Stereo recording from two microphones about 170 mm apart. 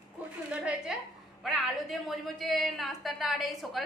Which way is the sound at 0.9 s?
5° right (ahead or behind).